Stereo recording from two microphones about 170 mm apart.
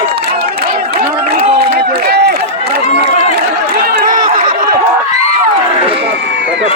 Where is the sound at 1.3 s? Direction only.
35° right (ahead or behind).